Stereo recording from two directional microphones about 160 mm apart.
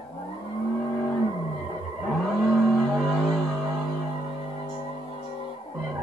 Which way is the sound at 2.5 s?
Centre (ahead or behind).